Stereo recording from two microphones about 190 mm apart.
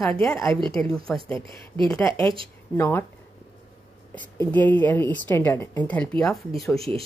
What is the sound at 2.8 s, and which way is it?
Speech, 10° left (ahead or behind).